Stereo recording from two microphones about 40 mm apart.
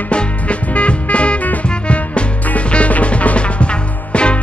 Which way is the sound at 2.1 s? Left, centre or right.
Left.